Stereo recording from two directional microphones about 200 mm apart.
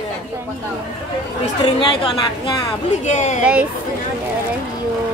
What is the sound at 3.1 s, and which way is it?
Speech, 40° left (ahead or behind).